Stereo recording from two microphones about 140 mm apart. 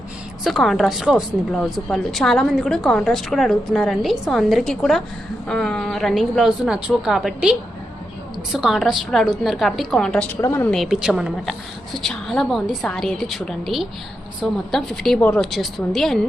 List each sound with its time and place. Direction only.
0.4 s a woman's voice: centre (ahead or behind)
8.5 s a woman's voice: centre (ahead or behind)
10.4 s speech: 20° left (ahead or behind)
10.7 s a woman's voice: centre (ahead or behind)